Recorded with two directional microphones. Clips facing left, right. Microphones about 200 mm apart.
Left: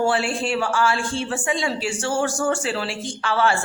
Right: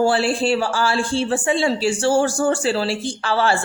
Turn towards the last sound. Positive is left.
turn(degrees=-35)  # may be behind; listen again after turning